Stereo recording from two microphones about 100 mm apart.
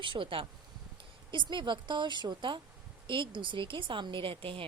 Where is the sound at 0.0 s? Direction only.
60° right (ahead or behind).